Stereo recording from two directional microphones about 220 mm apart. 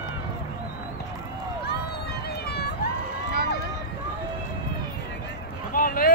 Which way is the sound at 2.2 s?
45° left (ahead or behind).